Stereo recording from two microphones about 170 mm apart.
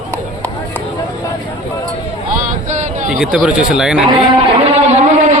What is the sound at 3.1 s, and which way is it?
Speech, 5° right (ahead or behind).